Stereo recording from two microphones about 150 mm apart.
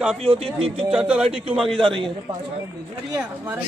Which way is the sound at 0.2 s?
40° right (ahead or behind).